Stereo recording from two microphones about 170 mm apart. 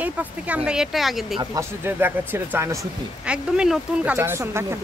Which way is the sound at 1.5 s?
15° right (ahead or behind).